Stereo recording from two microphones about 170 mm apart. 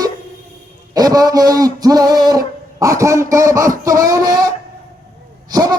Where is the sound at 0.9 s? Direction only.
20° right (ahead or behind).